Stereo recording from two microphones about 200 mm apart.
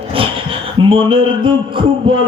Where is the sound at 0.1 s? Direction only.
25° right (ahead or behind).